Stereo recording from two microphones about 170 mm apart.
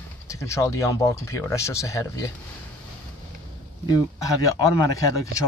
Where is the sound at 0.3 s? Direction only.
15° left (ahead or behind).